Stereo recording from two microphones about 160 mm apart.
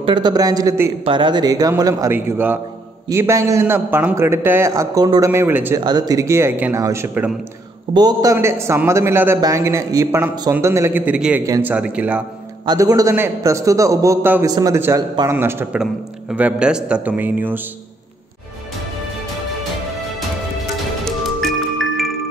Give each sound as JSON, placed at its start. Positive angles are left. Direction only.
{"t": 0.0, "sound": "a man's voice", "side_deg": -30}
{"t": 1.0, "sound": "a man's voice", "side_deg": -30}
{"t": 5.8, "sound": "a man's voice", "side_deg": -25}
{"t": 11.4, "sound": "a man's voice", "side_deg": -20}
{"t": 11.7, "sound": "a man's voice", "side_deg": -10}
{"t": 12.6, "sound": "a man's voice", "side_deg": -20}
{"t": 21.0, "sound": "music", "side_deg": 0}